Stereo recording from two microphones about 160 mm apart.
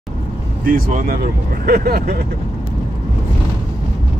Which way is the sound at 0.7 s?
65° right (ahead or behind).